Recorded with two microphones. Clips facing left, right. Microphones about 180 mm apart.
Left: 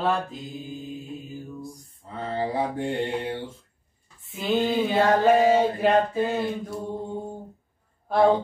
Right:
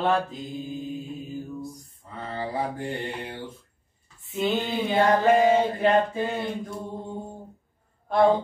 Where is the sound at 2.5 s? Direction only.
30° left (ahead or behind).